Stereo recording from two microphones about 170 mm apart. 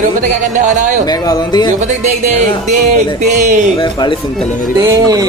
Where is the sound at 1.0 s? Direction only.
20° left (ahead or behind).